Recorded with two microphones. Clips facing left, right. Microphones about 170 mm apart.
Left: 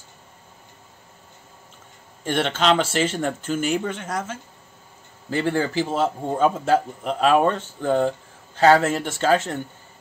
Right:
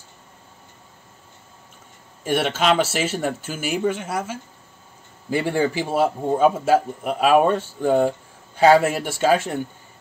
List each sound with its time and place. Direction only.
2.2 s speech: 10° right (ahead or behind)